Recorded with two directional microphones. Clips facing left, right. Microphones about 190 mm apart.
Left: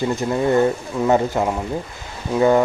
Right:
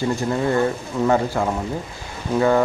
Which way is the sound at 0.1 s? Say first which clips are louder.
Left 4 dB; 20° left (ahead or behind).